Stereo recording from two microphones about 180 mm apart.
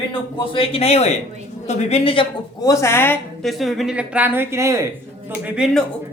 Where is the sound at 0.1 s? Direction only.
30° left (ahead or behind).